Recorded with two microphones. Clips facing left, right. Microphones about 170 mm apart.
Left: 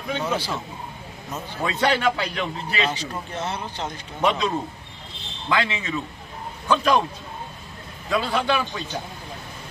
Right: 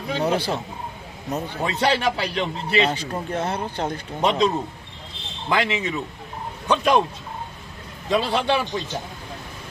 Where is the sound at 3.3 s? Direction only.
55° right (ahead or behind).